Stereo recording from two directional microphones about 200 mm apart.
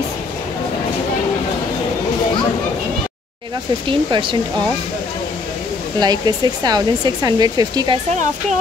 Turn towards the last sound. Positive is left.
turn(degrees=-20)  # may be behind; listen again after turning